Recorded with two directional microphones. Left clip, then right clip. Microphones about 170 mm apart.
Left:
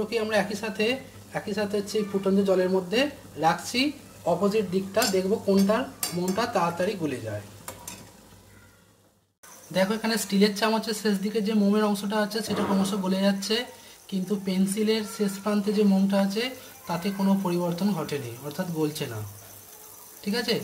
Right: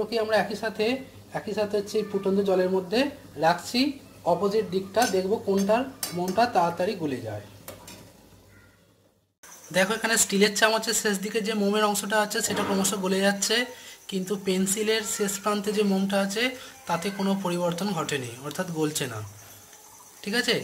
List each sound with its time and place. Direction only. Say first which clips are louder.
0.1 s a woman's voice: right 1 dB; centre (ahead or behind)
9.7 s a woman's voice: right 2 dB; centre (ahead or behind)
20.2 s speech: right 2 dB; centre (ahead or behind)